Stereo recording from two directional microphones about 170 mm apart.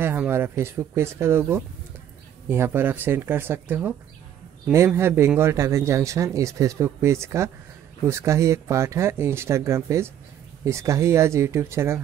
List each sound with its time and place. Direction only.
0.0 s a man's voice: 10° right (ahead or behind)